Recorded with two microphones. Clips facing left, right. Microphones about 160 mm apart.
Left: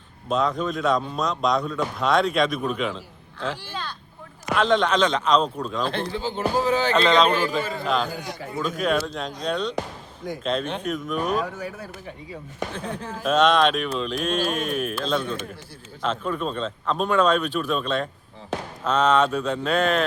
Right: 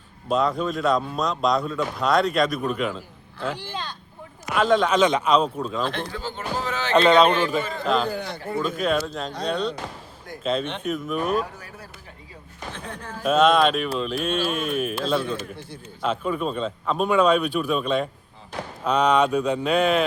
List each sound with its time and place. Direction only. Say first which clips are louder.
0.3 s speech: right 1 dB; centre (ahead or behind)
3.7 s vehicle: right 1 dB; 15° right (ahead or behind)
4.5 s a man's voice: right 1 dB; 5° right (ahead or behind)
5.9 s speech: left 3 dB; 30° left (ahead or behind)
6.9 s a man's voice: right 5 dB; 10° right (ahead or behind)
7.3 s speech: right 1 dB; centre (ahead or behind)
11.5 s speech: left 9 dB; 90° left
13.2 s a man's voice: right 1 dB; 5° right (ahead or behind)